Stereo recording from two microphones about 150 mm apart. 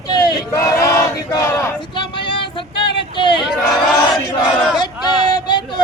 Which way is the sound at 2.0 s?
35° left (ahead or behind).